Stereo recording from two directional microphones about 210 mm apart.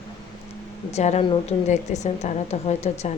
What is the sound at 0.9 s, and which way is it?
A woman's voice, 30° left (ahead or behind).